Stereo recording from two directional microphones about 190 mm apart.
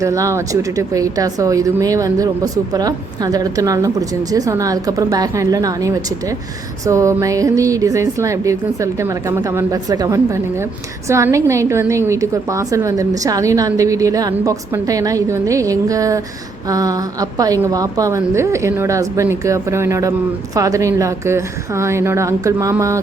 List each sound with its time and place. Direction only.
0.0 s speech: 15° right (ahead or behind)